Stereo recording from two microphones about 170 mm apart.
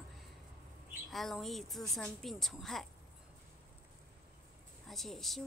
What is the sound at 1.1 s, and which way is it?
A woman's voice, centre (ahead or behind).